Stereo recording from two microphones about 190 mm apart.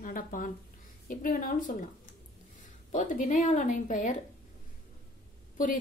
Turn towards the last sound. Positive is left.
turn(degrees=45)  # may be behind; listen again after turning